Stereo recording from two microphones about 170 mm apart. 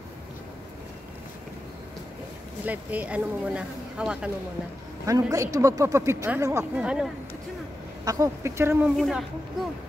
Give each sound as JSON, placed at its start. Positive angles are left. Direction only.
{"t": 2.6, "sound": "speech", "side_deg": -10}
{"t": 5.0, "sound": "speech", "side_deg": -20}
{"t": 8.0, "sound": "speech", "side_deg": -20}
{"t": 8.9, "sound": "speech", "side_deg": 0}